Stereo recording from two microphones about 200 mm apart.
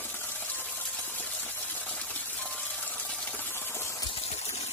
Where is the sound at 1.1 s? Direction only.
10° left (ahead or behind).